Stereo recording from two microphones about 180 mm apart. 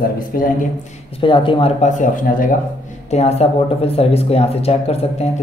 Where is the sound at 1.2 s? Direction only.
30° left (ahead or behind); by 2.5 s 45° left (ahead or behind).